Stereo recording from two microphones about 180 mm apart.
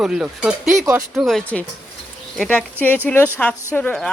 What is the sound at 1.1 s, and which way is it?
Speech, centre (ahead or behind).